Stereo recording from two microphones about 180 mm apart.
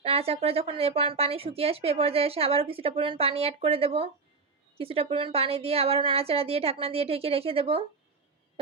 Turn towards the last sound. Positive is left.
turn(degrees=-30)  # may be behind; listen again after turning